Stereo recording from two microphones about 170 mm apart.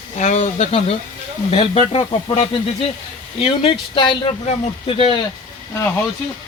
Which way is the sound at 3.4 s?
30° left (ahead or behind).